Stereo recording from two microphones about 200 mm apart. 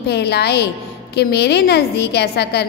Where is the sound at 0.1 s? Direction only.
55° left (ahead or behind).